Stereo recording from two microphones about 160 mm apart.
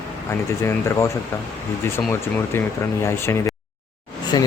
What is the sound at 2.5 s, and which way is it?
Speech, 15° left (ahead or behind).